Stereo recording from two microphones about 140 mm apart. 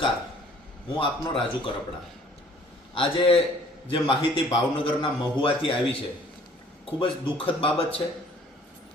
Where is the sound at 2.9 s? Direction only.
40° left (ahead or behind).